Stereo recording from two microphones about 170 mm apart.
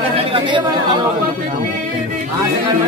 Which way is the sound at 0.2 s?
30° right (ahead or behind).